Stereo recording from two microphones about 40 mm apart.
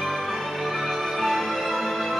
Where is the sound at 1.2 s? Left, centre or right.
Centre.